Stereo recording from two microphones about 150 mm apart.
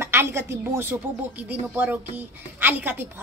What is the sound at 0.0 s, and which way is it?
A woman's voice, 15° right (ahead or behind).